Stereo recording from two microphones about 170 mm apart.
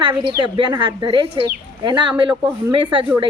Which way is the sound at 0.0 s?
30° right (ahead or behind).